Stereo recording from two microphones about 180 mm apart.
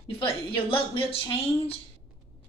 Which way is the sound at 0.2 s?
30° left (ahead or behind).